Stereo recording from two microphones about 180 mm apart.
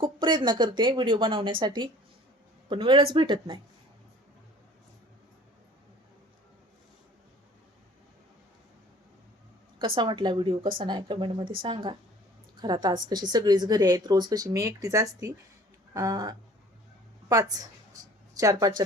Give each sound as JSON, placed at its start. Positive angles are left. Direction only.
{"t": 0.0, "sound": "a woman's voice", "side_deg": -25}
{"t": 9.7, "sound": "a woman's voice", "side_deg": -25}
{"t": 15.9, "sound": "a sound", "side_deg": -20}
{"t": 17.3, "sound": "a woman's voice", "side_deg": -20}